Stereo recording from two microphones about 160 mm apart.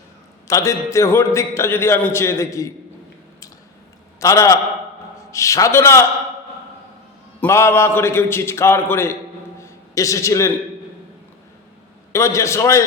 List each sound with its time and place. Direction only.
0.4 s a man's voice: 20° left (ahead or behind)
4.2 s a man's voice: 20° left (ahead or behind)
7.4 s a man's voice: 15° left (ahead or behind)
9.6 s a sound: 20° left (ahead or behind)
12.1 s a man's voice: 20° left (ahead or behind)